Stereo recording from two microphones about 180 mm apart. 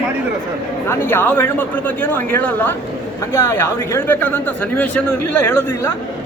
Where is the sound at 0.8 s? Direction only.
10° left (ahead or behind).